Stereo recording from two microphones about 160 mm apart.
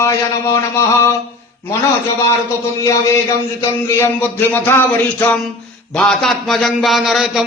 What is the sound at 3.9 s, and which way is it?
Speech, 15° left (ahead or behind).